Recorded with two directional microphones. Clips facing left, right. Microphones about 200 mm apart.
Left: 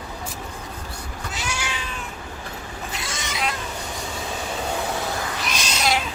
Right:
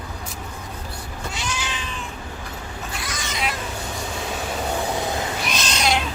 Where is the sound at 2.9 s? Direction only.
25° left (ahead or behind).